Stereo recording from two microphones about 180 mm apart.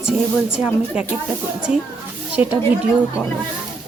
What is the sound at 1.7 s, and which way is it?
Speech, 5° right (ahead or behind).